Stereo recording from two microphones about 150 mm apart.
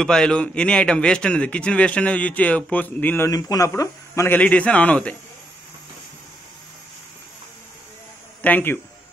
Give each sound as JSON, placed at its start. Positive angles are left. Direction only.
{"t": 0.0, "sound": "a man's voice", "side_deg": 5}
{"t": 3.3, "sound": "a man's voice", "side_deg": 25}
{"t": 8.4, "sound": "speech", "side_deg": 10}